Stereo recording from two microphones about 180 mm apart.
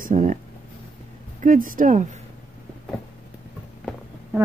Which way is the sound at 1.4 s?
50° right (ahead or behind).